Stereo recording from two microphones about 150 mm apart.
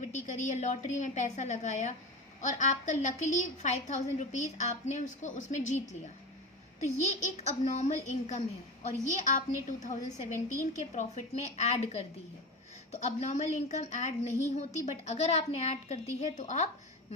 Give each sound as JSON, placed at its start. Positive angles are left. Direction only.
{"t": 0.3, "sound": "a woman's voice", "side_deg": 50}